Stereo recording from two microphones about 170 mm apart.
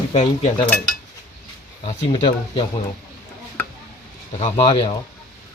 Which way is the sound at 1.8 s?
30° left (ahead or behind).